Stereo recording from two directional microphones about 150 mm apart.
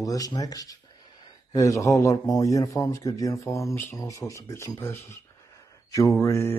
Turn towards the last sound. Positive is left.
turn(degrees=20)  # may be behind; listen again after turning